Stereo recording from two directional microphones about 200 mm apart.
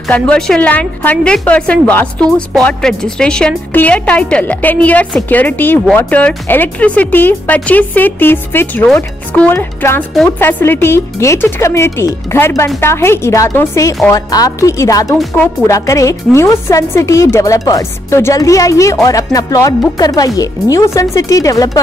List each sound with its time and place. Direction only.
0.1 s a woman's voice: 5° left (ahead or behind)